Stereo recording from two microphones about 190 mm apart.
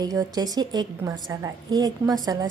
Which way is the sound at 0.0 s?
20° right (ahead or behind).